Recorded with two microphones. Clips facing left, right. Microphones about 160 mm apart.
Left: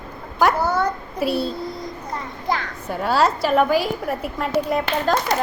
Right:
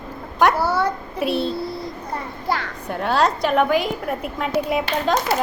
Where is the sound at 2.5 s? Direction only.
Centre (ahead or behind).